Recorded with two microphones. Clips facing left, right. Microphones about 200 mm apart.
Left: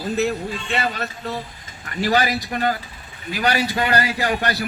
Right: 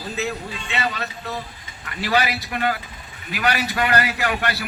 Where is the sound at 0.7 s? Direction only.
50° left (ahead or behind).